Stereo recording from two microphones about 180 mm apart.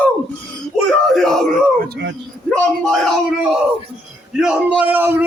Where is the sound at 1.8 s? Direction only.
70° right (ahead or behind).